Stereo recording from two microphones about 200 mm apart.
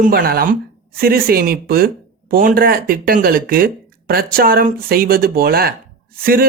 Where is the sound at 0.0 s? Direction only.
50° right (ahead or behind).